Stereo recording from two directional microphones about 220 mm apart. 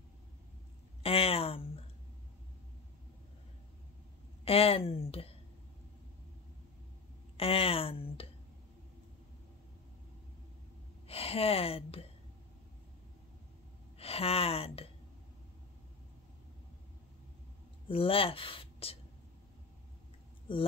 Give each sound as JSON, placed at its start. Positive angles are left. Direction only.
{"t": 1.0, "sound": "speech", "side_deg": 25}
{"t": 4.5, "sound": "speech", "side_deg": 25}
{"t": 7.3, "sound": "speech", "side_deg": 25}
{"t": 11.1, "sound": "speech", "side_deg": 25}
{"t": 13.9, "sound": "speech", "side_deg": 25}
{"t": 17.8, "sound": "speech", "side_deg": 25}